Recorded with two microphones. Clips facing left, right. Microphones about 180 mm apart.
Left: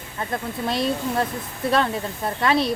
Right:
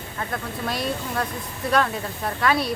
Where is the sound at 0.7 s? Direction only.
25° left (ahead or behind).